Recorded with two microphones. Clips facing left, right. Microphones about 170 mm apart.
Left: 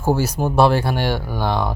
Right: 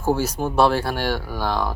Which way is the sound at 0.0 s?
10° left (ahead or behind).